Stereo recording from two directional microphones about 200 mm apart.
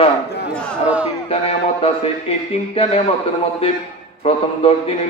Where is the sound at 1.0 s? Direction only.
30° left (ahead or behind).